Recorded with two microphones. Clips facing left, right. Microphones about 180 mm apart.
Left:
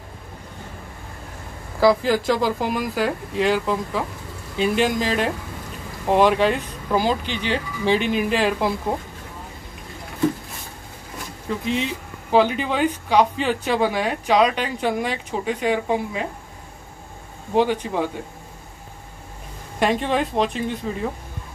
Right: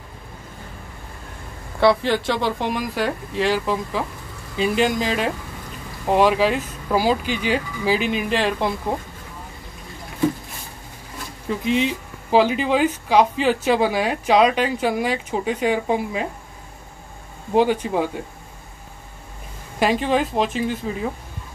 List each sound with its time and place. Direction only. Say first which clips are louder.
1.8 s speech: even; centre (ahead or behind)
12.3 s a woman's voice: right 1 dB; 5° right (ahead or behind)
17.6 s a woman's voice: right 2 dB; 15° right (ahead or behind)
19.8 s speech: right 1 dB; centre (ahead or behind)